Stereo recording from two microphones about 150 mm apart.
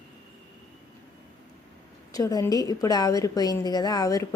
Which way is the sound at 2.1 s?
25° left (ahead or behind).